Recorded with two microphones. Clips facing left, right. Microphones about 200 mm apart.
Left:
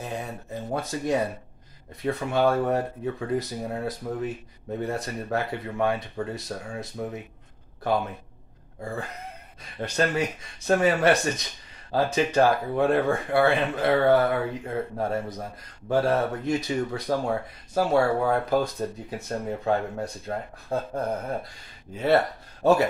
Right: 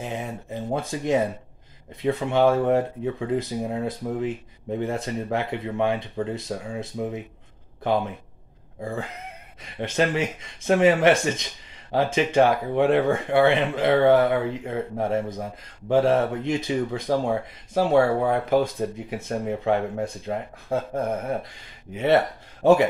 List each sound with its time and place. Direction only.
0.0 s speech: 20° right (ahead or behind)
9.8 s speech: 20° right (ahead or behind)